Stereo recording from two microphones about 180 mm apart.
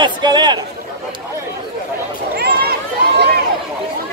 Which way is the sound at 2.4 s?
60° right (ahead or behind).